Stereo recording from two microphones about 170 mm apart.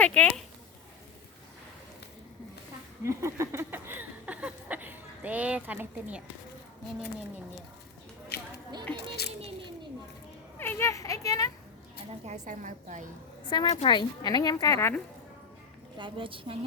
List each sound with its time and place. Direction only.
0.0 s speech: 5° left (ahead or behind)
3.0 s a sound: 15° right (ahead or behind)
8.3 s a sound: 70° left (ahead or behind)
9.0 s speech: 75° left (ahead or behind)
10.6 s speech: 15° left (ahead or behind)
12.2 s a woman's voice: 45° right (ahead or behind)
13.5 s a woman's voice: 25° left (ahead or behind)
16.0 s a woman's voice: 30° right (ahead or behind)